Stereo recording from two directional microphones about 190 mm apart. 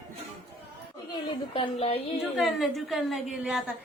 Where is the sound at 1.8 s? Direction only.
30° left (ahead or behind).